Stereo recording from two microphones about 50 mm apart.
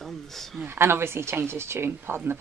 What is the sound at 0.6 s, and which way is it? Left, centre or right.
Speech, right.